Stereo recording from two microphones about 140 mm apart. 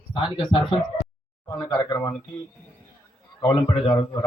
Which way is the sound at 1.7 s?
25° left (ahead or behind).